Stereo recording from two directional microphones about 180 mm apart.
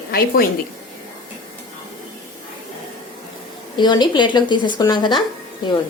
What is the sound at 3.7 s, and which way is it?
A woman's voice, 25° left (ahead or behind).